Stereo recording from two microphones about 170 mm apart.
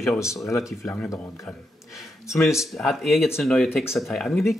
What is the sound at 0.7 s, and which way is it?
Speech, 20° left (ahead or behind).